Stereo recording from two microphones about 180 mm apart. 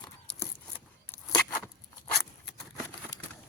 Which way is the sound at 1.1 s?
10° left (ahead or behind).